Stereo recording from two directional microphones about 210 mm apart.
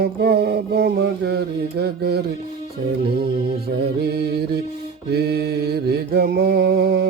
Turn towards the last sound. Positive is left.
turn(degrees=-50)  # may be behind; listen again after turning